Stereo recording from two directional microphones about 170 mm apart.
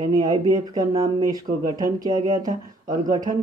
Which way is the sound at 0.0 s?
25° right (ahead or behind).